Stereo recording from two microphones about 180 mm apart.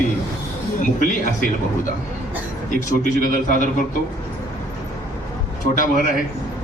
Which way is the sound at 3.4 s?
45° left (ahead or behind).